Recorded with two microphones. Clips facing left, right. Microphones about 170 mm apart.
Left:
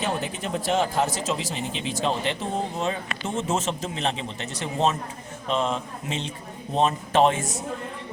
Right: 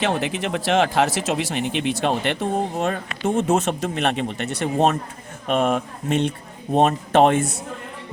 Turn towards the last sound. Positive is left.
turn(degrees=-60)  # may be behind; listen again after turning